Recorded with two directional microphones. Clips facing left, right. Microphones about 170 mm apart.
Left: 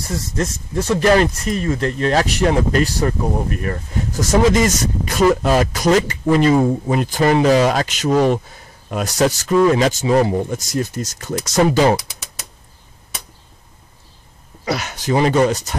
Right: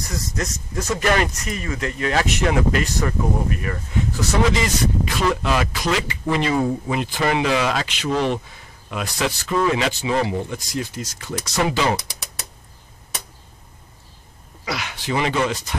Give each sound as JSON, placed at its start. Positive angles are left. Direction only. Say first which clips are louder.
{"t": 0.4, "sound": "speech", "louder": "left 7 dB", "side_deg": 30}
{"t": 14.6, "sound": "speech", "louder": "left 6 dB", "side_deg": 40}